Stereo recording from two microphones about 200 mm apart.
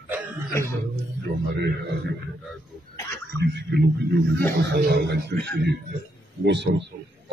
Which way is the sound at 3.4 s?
55° right (ahead or behind).